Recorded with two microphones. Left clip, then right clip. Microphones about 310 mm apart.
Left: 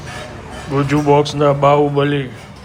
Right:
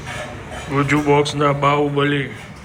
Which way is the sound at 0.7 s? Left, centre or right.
Centre.